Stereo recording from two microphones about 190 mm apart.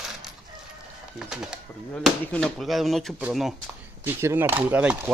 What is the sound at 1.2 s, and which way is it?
Speech, 5° right (ahead or behind).